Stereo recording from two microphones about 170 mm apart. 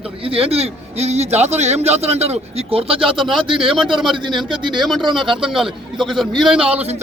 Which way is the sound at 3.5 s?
30° right (ahead or behind).